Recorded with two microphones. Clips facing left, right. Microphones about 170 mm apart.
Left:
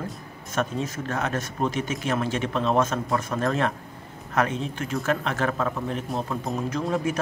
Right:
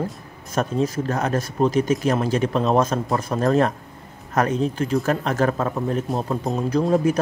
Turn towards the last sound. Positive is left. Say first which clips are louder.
# right 7 dB
turn(degrees=-35)  # may be behind; listen again after turning